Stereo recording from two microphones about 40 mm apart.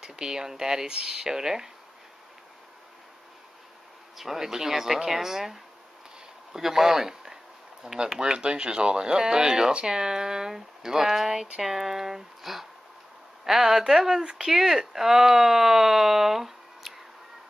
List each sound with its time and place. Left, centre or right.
0.0 s speech: centre
4.2 s speech: centre